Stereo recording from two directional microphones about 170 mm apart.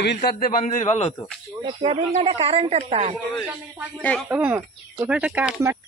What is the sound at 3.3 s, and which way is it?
Speech, 10° right (ahead or behind).